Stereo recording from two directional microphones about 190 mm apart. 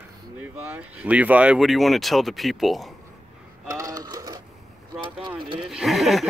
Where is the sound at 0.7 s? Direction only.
10° right (ahead or behind).